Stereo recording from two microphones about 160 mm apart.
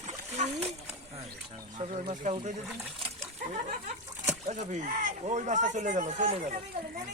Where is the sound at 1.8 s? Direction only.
45° right (ahead or behind).